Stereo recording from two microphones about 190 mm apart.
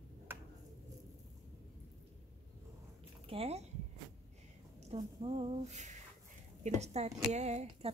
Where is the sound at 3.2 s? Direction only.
30° right (ahead or behind).